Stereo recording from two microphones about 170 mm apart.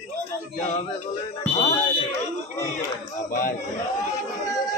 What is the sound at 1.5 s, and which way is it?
Speech, 40° left (ahead or behind).